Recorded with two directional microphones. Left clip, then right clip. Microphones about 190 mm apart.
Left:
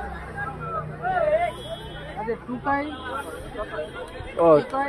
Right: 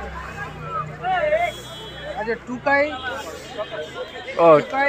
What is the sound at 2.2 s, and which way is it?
Speech, 35° right (ahead or behind).